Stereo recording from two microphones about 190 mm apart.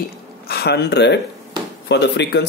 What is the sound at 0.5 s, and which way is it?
Speech, 60° left (ahead or behind).